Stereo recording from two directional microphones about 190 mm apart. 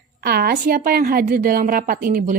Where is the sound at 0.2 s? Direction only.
55° right (ahead or behind).